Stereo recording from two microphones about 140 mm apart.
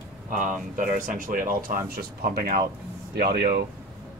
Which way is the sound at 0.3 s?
65° right (ahead or behind).